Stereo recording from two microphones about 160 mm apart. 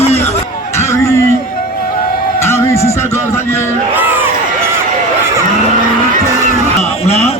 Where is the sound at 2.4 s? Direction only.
15° left (ahead or behind).